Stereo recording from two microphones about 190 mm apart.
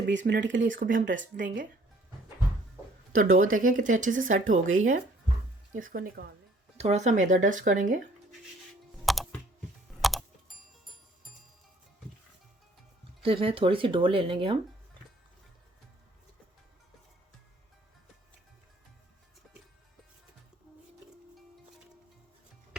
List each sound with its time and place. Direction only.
0.0 s speech: 70° right (ahead or behind)
0.8 s speech: 45° right (ahead or behind)
3.3 s speech: 45° right (ahead or behind)
4.6 s speech: 90° right
5.7 s speech: 45° right (ahead or behind)
6.7 s speech: 35° right (ahead or behind)
9.1 s computer keyboard: centre (ahead or behind)
10.0 s music: centre (ahead or behind)
13.2 s speech: 30° right (ahead or behind)